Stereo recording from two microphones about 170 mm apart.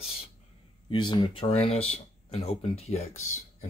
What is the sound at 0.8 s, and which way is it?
Speech, 25° left (ahead or behind).